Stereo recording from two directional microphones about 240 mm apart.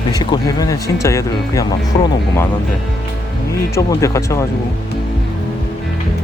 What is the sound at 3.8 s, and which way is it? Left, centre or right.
Speech, centre.